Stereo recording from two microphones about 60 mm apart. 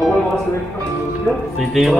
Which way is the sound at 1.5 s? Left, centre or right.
Centre.